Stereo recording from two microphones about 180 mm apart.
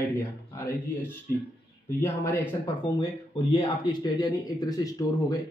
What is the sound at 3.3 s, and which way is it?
Speech, 25° left (ahead or behind).